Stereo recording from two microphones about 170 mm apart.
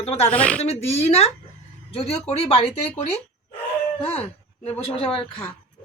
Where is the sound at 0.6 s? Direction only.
40° left (ahead or behind).